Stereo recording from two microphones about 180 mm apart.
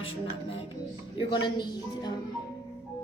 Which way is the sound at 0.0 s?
30° left (ahead or behind).